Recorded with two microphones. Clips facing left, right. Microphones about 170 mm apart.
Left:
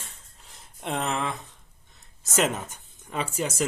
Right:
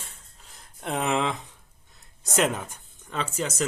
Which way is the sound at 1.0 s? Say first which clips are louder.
Right 5 dB; 15° right (ahead or behind).